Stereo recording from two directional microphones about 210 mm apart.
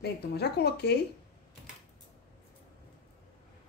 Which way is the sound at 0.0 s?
50° left (ahead or behind).